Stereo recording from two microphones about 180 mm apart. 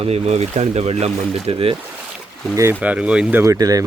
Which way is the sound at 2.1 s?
Centre (ahead or behind).